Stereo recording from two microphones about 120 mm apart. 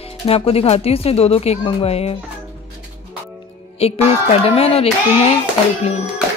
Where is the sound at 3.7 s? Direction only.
55° left (ahead or behind).